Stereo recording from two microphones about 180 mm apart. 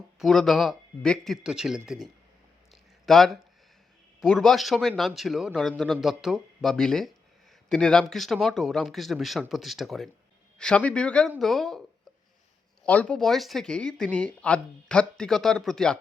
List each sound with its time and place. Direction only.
0.2 s speech: centre (ahead or behind)
3.1 s speech: centre (ahead or behind)
12.8 s speech: 5° left (ahead or behind)